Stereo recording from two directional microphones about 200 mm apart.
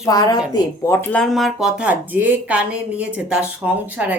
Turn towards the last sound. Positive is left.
turn(degrees=-5)  # may be behind; listen again after turning